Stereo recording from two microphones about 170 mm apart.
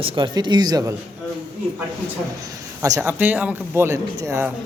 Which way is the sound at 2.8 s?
15° right (ahead or behind).